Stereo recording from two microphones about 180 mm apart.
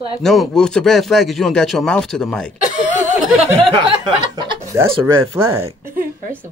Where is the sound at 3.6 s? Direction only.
30° right (ahead or behind).